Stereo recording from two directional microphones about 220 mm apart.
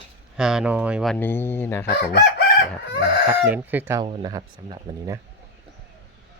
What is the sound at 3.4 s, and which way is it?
Speech, 10° right (ahead or behind).